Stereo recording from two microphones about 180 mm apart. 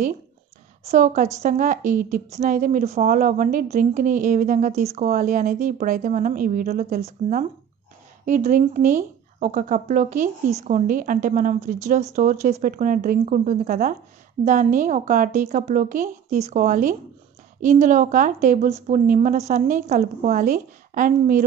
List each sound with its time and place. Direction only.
0.8 s speech: 45° right (ahead or behind)
7.0 s speech: 40° right (ahead or behind)